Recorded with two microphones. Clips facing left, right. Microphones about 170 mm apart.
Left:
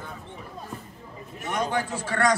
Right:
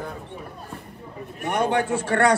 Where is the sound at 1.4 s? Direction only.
60° right (ahead or behind).